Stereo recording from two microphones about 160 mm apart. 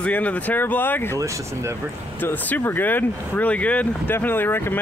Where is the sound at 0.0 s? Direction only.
10° left (ahead or behind).